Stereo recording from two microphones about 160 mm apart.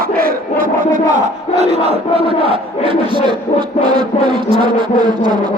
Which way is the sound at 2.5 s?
35° right (ahead or behind).